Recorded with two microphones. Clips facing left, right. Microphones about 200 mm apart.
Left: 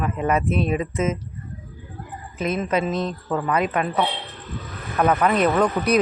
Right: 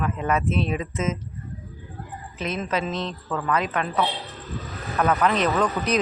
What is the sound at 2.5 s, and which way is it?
Speech, 5° left (ahead or behind).